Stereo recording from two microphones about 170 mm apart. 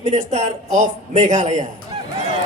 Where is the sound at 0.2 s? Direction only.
45° right (ahead or behind).